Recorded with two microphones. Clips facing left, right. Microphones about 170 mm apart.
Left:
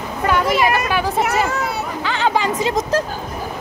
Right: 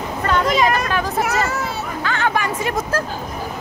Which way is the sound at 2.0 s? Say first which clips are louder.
Left 2 dB; 20° left (ahead or behind).